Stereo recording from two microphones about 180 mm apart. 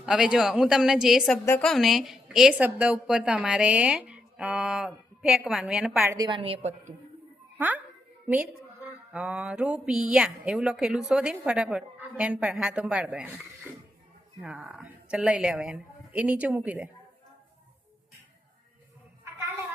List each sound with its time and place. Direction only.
0.0 s speech: 5° right (ahead or behind)
6.2 s a woman's voice: 30° right (ahead or behind)
9.1 s speech: 5° right (ahead or behind)
14.4 s a woman's voice: 5° right (ahead or behind)